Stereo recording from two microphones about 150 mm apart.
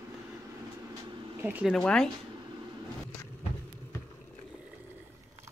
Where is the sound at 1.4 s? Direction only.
10° right (ahead or behind).